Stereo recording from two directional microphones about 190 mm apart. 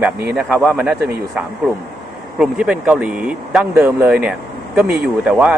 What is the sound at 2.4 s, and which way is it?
Speech, 5° right (ahead or behind).